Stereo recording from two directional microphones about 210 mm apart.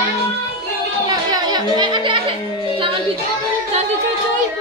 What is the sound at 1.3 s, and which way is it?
Music, 20° right (ahead or behind).